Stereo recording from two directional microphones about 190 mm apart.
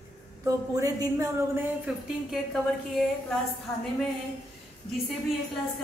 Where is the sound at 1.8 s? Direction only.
Centre (ahead or behind).